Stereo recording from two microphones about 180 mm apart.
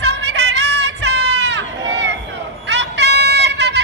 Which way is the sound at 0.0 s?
70° right (ahead or behind).